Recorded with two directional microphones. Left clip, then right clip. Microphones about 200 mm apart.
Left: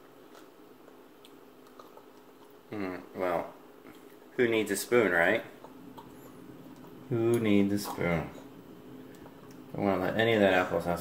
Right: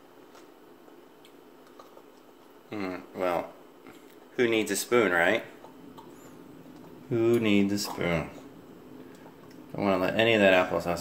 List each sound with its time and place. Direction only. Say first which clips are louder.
2.7 s speech: right 2 dB; 15° right (ahead or behind)
7.1 s speech: right 3 dB; 20° right (ahead or behind)
9.8 s speech: right 3 dB; 15° right (ahead or behind)